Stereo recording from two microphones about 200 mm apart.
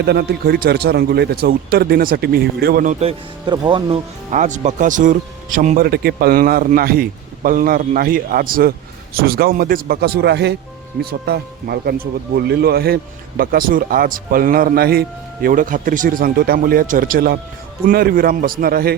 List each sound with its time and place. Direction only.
0.0 s speech: 55° right (ahead or behind)
3.0 s speech: 25° right (ahead or behind)
4.3 s speech: 35° right (ahead or behind)